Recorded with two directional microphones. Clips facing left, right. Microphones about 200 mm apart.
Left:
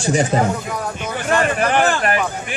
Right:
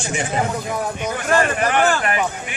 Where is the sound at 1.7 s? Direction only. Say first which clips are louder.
Left 1 dB; 35° left (ahead or behind).